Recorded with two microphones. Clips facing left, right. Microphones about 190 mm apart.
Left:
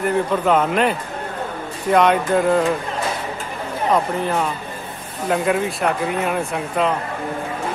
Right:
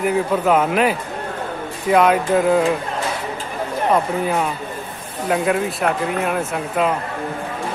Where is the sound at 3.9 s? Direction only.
5° right (ahead or behind).